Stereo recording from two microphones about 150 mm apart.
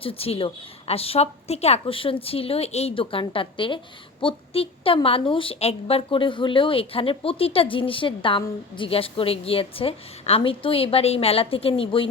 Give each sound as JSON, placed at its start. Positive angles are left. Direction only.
{"t": 0.0, "sound": "a woman's voice", "side_deg": 40}